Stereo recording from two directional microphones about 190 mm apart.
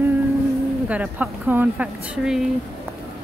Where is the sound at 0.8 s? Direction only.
5° right (ahead or behind).